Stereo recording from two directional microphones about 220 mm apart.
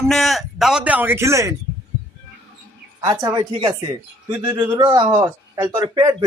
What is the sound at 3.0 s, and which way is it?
Speech, 15° right (ahead or behind).